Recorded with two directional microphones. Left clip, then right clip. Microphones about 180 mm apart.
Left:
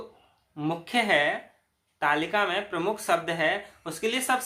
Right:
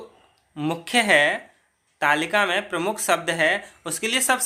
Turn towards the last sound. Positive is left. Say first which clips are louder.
# right 4 dB
turn(degrees=-35)  # may be behind; listen again after turning